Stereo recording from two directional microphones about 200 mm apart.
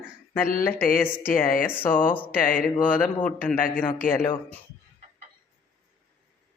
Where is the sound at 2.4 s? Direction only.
45° left (ahead or behind).